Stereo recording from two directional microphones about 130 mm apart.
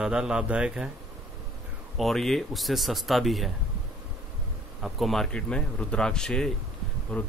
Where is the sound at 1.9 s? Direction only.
Centre (ahead or behind).